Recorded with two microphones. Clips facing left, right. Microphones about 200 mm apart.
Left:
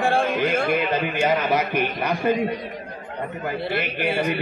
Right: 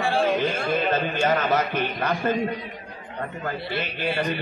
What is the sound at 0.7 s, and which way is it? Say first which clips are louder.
A man's voice: left 1 dB; 15° left (ahead or behind).